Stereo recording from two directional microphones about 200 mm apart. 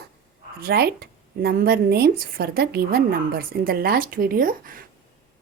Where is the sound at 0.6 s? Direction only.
50° right (ahead or behind).